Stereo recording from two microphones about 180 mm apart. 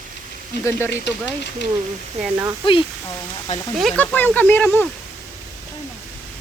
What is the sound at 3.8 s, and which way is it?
Speech, 5° left (ahead or behind).